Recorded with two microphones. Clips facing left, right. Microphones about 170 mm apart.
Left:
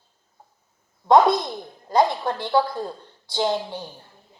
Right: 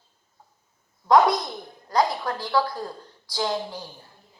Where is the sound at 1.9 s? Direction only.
25° left (ahead or behind).